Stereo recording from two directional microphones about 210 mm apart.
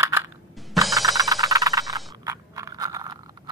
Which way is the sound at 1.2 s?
15° right (ahead or behind).